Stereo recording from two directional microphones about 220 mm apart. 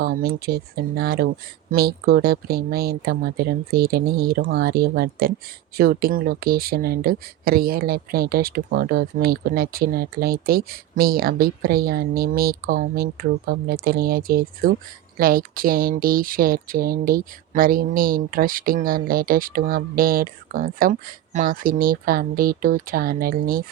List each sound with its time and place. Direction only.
0.0 s speech: 45° right (ahead or behind)